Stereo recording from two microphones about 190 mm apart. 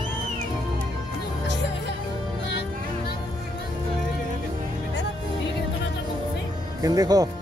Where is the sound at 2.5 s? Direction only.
65° left (ahead or behind).